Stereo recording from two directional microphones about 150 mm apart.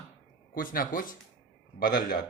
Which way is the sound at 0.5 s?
70° left (ahead or behind).